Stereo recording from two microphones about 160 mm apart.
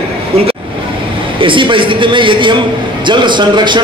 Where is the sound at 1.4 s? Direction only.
30° right (ahead or behind).